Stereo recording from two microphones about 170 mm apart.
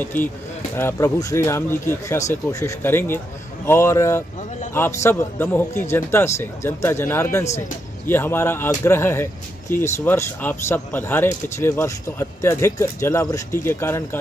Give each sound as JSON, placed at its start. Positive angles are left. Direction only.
{"t": 0.0, "sound": "speech", "side_deg": 10}